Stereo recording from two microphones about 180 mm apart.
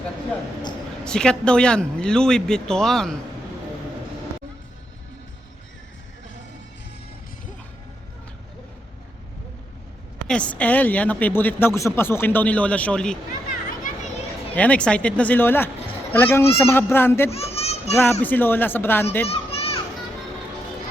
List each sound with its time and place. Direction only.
1.0 s a man's voice: 5° left (ahead or behind)
10.2 s speech: 5° left (ahead or behind)
14.5 s speech: 5° left (ahead or behind)
17.3 s children playing: 35° left (ahead or behind)
17.9 s speech: 10° left (ahead or behind)
19.3 s children playing: 35° left (ahead or behind)